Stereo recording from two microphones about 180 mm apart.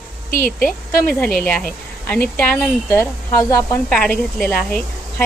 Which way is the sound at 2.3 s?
5° left (ahead or behind).